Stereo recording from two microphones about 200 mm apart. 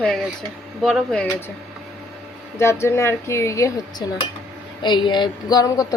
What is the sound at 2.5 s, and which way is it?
A woman's voice, 15° left (ahead or behind).